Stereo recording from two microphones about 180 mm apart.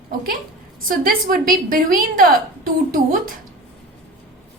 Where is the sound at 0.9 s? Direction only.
50° right (ahead or behind).